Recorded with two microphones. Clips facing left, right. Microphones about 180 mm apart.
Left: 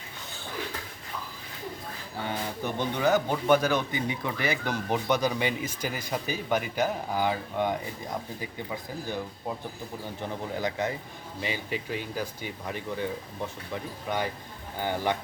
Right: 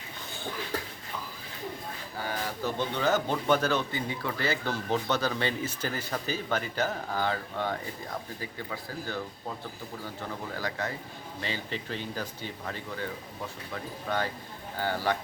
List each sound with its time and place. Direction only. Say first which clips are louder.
2.2 s a man's voice: left 1 dB; 15° left (ahead or behind)
14.1 s a man's voice: left 1 dB; 15° left (ahead or behind)